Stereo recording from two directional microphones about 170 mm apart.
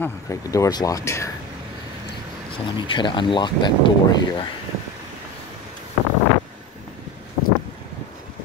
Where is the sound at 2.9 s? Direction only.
30° left (ahead or behind).